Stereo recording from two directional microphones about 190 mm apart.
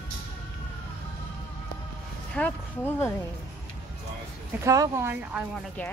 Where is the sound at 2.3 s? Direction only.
10° left (ahead or behind).